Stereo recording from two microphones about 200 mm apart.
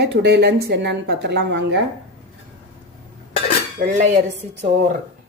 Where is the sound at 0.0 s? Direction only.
60° right (ahead or behind).